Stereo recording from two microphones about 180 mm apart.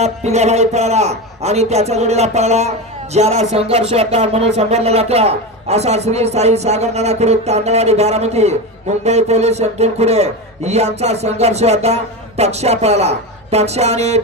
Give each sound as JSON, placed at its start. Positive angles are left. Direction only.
{"t": 0.0, "sound": "a man's voice", "side_deg": -40}